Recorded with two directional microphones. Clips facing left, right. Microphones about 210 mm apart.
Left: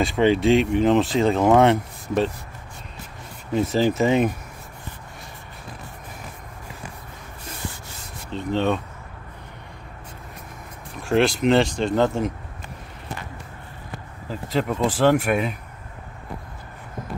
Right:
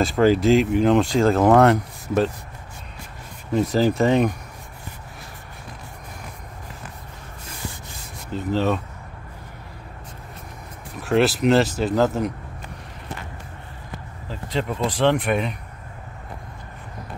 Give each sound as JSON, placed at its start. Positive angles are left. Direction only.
{"t": 0.0, "sound": "speech", "side_deg": 0}
{"t": 3.5, "sound": "speech", "side_deg": 0}
{"t": 8.3, "sound": "speech", "side_deg": -5}
{"t": 11.0, "sound": "speech", "side_deg": 0}
{"t": 14.3, "sound": "speech", "side_deg": 5}